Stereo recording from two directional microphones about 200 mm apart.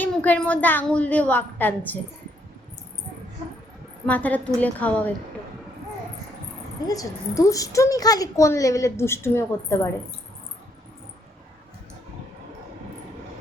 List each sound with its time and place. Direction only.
0.0 s a woman's voice: 10° left (ahead or behind)
4.0 s a woman's voice: 10° left (ahead or behind)
6.8 s a woman's voice: 15° left (ahead or behind)